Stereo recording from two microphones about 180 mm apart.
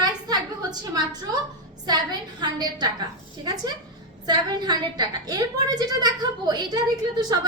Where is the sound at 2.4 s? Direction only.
25° right (ahead or behind).